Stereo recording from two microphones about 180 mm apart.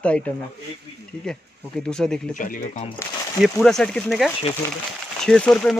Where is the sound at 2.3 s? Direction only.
45° left (ahead or behind).